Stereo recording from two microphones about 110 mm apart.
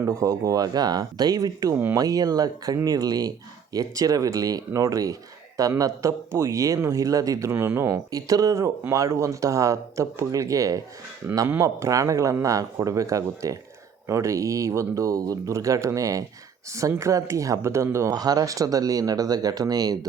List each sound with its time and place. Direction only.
0.0 s speech: 25° right (ahead or behind)
7.5 s speech: 20° right (ahead or behind)
8.1 s speech: 30° right (ahead or behind)
18.1 s speech: 35° right (ahead or behind)